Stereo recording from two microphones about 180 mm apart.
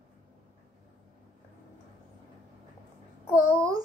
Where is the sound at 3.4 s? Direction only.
15° right (ahead or behind).